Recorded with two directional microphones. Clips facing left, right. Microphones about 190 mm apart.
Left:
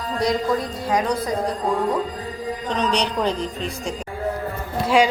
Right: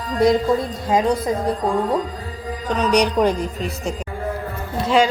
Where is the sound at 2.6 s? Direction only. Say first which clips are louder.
Right 5 dB; 10° right (ahead or behind).